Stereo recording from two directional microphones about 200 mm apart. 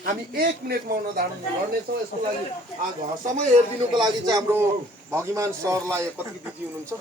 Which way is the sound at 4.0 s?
20° right (ahead or behind).